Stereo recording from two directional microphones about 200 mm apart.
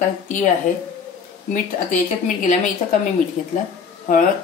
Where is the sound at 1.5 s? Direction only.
40° left (ahead or behind).